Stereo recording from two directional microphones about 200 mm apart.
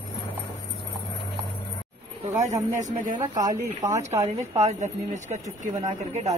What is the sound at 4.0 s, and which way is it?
Speech, 35° right (ahead or behind).